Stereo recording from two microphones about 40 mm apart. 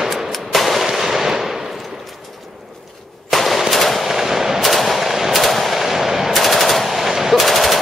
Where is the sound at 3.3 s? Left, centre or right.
Centre.